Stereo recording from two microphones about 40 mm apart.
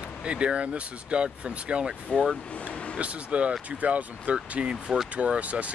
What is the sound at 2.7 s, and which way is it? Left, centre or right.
Vehicle, left.